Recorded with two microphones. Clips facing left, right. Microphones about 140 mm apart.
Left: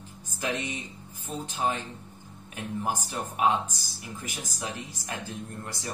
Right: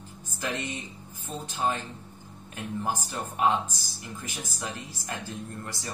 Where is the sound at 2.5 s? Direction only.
15° left (ahead or behind).